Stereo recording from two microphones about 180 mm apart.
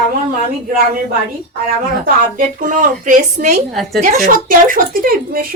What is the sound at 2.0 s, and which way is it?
A woman's voice, 50° right (ahead or behind).